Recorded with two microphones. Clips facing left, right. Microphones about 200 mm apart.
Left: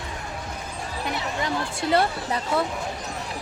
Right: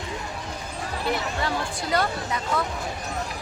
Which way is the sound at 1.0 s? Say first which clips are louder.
Right 1 dB; 20° left (ahead or behind).